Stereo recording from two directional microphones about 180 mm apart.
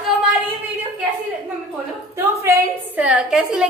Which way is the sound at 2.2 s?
15° right (ahead or behind).